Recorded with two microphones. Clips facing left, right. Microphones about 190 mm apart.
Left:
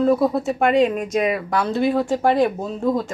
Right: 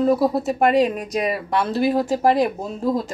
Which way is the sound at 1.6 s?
5° right (ahead or behind).